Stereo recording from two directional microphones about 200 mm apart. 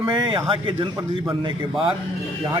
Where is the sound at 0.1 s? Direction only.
25° right (ahead or behind).